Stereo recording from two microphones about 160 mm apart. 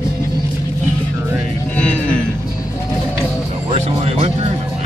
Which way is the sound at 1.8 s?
5° left (ahead or behind).